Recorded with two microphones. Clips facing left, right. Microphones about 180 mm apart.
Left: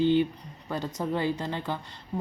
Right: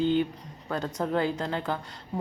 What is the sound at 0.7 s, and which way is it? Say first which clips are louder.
A woman's voice: right 2 dB; centre (ahead or behind).